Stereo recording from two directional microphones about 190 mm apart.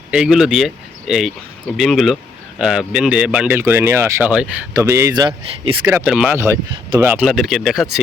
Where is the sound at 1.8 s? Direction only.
Centre (ahead or behind); by 5.8 s 25° right (ahead or behind).